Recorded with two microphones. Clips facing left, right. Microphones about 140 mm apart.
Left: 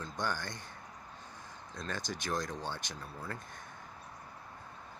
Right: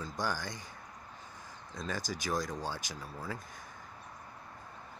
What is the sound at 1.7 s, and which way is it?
Speech, 5° right (ahead or behind).